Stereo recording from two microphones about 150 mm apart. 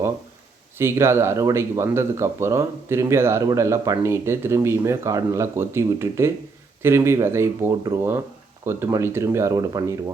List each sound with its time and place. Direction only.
0.8 s speech: 15° right (ahead or behind)